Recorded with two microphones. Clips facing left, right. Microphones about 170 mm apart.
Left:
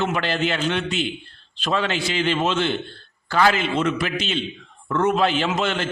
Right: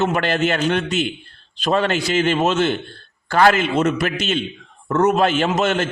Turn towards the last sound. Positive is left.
turn(degrees=-45)  # may be behind; listen again after turning